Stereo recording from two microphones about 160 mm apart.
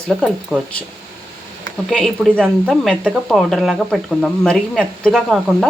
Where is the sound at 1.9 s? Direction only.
5° left (ahead or behind).